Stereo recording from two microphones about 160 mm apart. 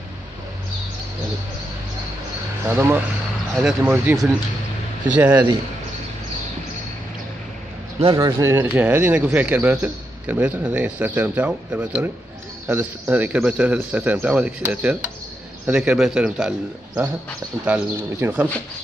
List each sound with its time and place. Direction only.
2.7 s a man's voice: 10° right (ahead or behind)
5.3 s a man's voice: 25° right (ahead or behind)
8.2 s a man's voice: 20° right (ahead or behind)